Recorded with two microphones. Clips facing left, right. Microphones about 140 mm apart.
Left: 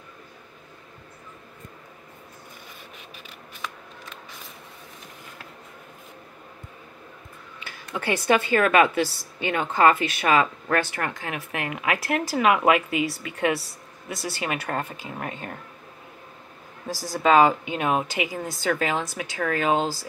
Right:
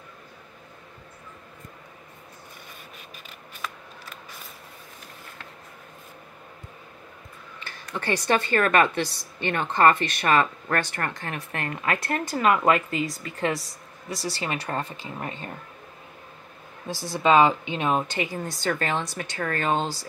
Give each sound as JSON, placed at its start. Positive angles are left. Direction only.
{"t": 7.6, "sound": "speech", "side_deg": 10}
{"t": 14.1, "sound": "speech", "side_deg": 55}
{"t": 14.7, "sound": "speech", "side_deg": 5}
{"t": 16.9, "sound": "speech", "side_deg": 45}
{"t": 17.2, "sound": "speech", "side_deg": 5}